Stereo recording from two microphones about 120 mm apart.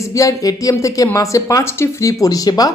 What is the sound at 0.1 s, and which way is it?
Speech, 30° left (ahead or behind).